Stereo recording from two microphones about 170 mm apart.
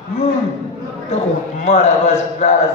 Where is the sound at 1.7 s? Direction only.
40° left (ahead or behind).